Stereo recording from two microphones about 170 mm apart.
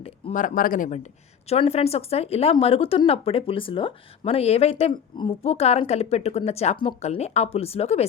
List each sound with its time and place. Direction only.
0.3 s speech: 55° left (ahead or behind)
1.5 s speech: 35° left (ahead or behind)